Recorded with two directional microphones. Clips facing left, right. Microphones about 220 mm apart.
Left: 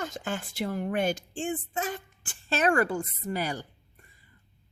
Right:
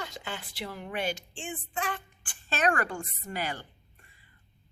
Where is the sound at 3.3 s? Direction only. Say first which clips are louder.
Left 3 dB; 40° left (ahead or behind).